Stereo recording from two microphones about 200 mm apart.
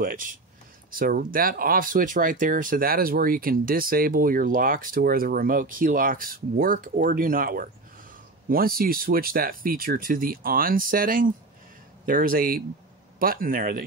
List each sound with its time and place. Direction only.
0.0 s speech: 45° right (ahead or behind)